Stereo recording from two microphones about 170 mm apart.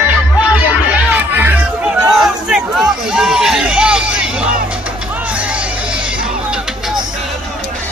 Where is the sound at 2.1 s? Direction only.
5° right (ahead or behind).